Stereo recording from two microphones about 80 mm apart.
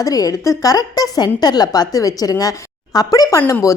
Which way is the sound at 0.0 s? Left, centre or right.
Left.